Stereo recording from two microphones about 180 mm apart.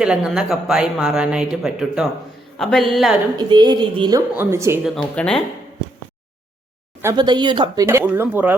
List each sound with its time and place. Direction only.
0.0 s speech: 5° right (ahead or behind)
3.3 s speech: 25° right (ahead or behind)
4.4 s speech: 15° right (ahead or behind)
4.8 s speech: 5° left (ahead or behind)
7.0 s speech: 20° right (ahead or behind)
7.9 s speech: 15° right (ahead or behind)